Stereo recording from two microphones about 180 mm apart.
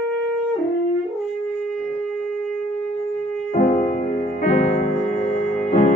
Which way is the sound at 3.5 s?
40° left (ahead or behind).